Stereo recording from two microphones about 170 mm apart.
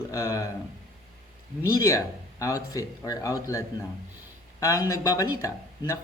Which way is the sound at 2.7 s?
20° left (ahead or behind).